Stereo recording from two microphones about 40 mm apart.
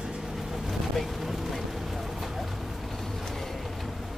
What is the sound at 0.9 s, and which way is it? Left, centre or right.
Vehicle, centre.